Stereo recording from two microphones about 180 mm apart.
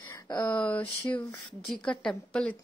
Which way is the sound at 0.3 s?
25° left (ahead or behind).